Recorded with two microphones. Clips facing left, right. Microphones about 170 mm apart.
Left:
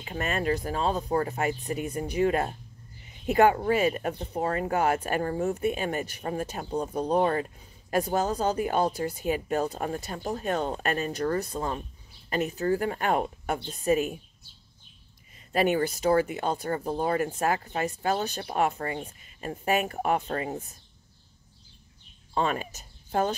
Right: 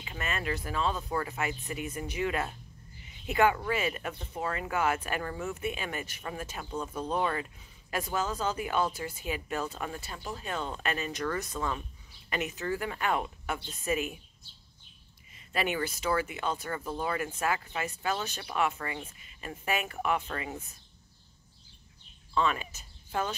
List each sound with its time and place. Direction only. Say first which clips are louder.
0.0 s speech: left 6 dB; 40° left (ahead or behind)
15.3 s speech: left 7 dB; 45° left (ahead or behind)
22.3 s speech: left 2 dB; 45° left (ahead or behind)